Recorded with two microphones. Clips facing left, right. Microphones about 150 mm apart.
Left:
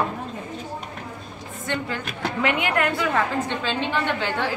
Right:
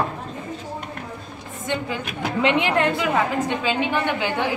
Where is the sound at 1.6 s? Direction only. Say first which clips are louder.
Right 2 dB; 15° right (ahead or behind).